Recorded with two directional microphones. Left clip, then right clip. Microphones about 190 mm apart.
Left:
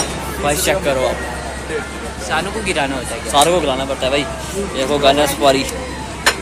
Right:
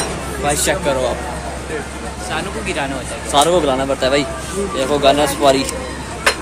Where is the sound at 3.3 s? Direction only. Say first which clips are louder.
Even; 20° right (ahead or behind).